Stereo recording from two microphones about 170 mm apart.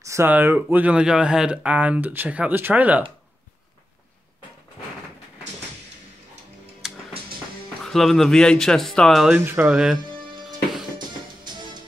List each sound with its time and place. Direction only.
0.0 s speech: 15° right (ahead or behind)
6.8 s music: centre (ahead or behind)
7.8 s speech: centre (ahead or behind)